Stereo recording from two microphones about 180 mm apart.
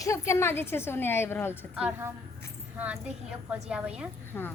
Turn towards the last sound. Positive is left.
turn(degrees=10)  # may be behind; listen again after turning